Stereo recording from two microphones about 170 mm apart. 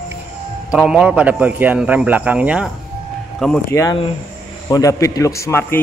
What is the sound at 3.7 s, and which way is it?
A man's voice, 20° left (ahead or behind).